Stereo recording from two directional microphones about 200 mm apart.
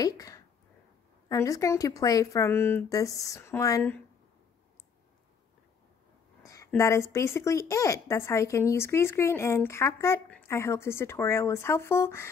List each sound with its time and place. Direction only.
0.0 s speech: 15° left (ahead or behind)
6.4 s speech: 15° left (ahead or behind)